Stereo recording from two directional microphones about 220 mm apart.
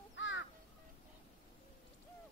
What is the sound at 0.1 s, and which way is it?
Crow, 55° left (ahead or behind).